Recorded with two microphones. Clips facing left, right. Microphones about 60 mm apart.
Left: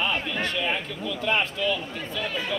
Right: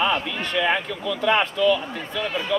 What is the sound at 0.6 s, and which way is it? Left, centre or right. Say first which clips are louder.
Speech: right 5 dB; right.